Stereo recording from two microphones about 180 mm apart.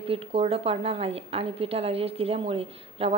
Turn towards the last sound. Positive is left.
turn(degrees=-30)  # may be behind; listen again after turning